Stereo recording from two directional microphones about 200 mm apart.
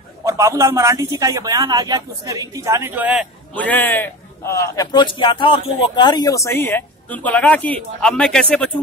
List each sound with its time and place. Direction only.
0.2 s a man's voice: 15° right (ahead or behind)
3.5 s speech: 10° left (ahead or behind)